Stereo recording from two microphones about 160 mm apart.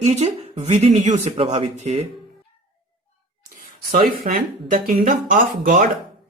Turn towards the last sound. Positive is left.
turn(degrees=-60)  # may be behind; listen again after turning